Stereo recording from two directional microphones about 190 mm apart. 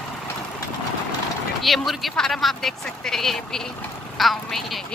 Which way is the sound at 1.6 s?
Centre (ahead or behind).